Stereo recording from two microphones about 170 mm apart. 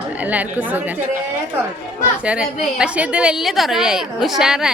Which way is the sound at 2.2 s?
5° right (ahead or behind).